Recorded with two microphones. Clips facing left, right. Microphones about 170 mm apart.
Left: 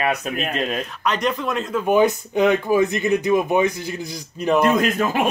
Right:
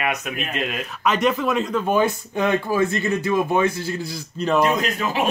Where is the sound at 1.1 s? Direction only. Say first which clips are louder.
Right 3 dB; 5° right (ahead or behind).